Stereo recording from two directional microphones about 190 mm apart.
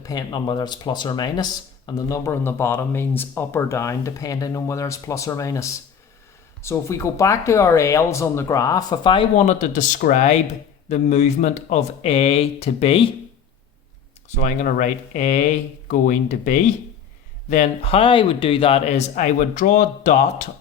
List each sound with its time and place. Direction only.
0.0 s speech: 20° left (ahead or behind)
9.3 s speech: 40° left (ahead or behind)
14.3 s speech: 40° left (ahead or behind)